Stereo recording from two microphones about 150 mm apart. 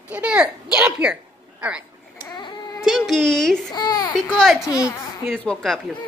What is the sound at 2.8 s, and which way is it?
Speech, centre (ahead or behind).